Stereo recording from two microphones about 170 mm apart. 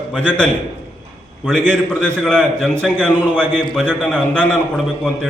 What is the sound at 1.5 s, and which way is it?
A man's voice, 5° left (ahead or behind).